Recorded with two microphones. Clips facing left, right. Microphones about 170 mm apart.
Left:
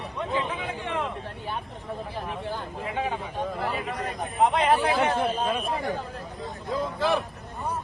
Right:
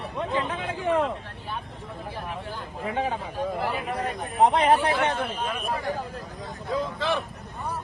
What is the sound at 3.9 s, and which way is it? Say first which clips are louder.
Speech: right 2 dB; 30° right (ahead or behind).